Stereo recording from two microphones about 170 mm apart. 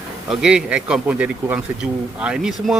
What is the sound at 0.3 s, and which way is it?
Speech, 5° right (ahead or behind).